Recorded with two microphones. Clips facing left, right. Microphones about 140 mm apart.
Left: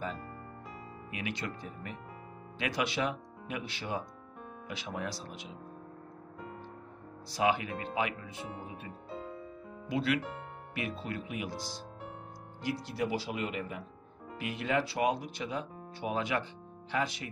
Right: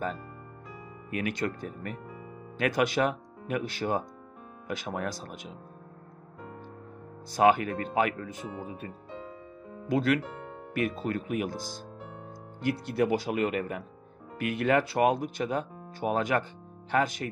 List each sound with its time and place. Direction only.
1.1 s speech: 50° right (ahead or behind)
7.2 s speech: 50° right (ahead or behind)